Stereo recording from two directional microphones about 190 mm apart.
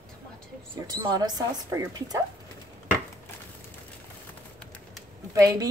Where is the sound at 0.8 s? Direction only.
20° right (ahead or behind).